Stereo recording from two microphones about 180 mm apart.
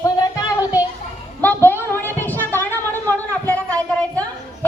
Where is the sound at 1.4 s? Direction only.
10° left (ahead or behind).